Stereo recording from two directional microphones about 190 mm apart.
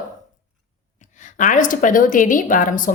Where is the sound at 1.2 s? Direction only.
40° left (ahead or behind).